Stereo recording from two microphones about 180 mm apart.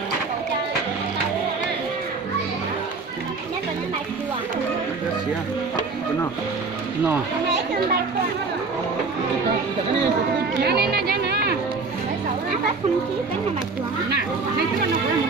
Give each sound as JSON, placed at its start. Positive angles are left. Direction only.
{"t": 10.6, "sound": "speech", "side_deg": -65}